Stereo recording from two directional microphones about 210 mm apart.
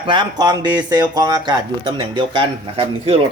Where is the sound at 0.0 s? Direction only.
25° right (ahead or behind).